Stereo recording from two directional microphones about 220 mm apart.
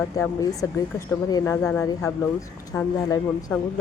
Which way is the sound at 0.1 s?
15° left (ahead or behind).